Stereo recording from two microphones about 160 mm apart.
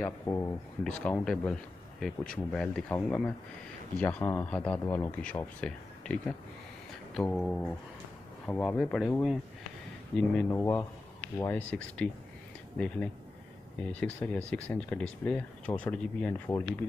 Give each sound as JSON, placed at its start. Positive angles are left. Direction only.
{"t": 0.0, "sound": "speech", "side_deg": 15}
{"t": 0.8, "sound": "speech", "side_deg": 5}
{"t": 10.1, "sound": "speech", "side_deg": 10}